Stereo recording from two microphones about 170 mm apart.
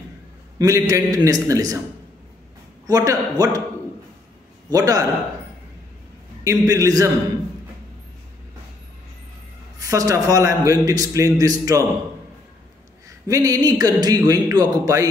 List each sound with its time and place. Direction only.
0.6 s a man's voice: 20° right (ahead or behind)
2.9 s a man's voice: 20° right (ahead or behind)
4.6 s a man's voice: 20° right (ahead or behind)
6.4 s a man's voice: 20° right (ahead or behind)
9.8 s a man's voice: 20° right (ahead or behind)
13.3 s a man's voice: 20° right (ahead or behind)